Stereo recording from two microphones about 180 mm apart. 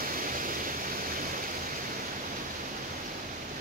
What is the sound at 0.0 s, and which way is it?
Waterfall, 50° right (ahead or behind).